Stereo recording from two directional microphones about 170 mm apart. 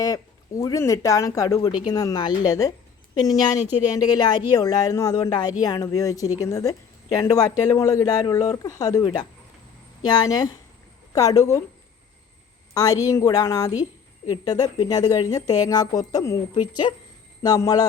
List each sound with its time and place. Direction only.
0.0 s a woman's voice: 20° left (ahead or behind)
12.7 s a woman's voice: 20° left (ahead or behind)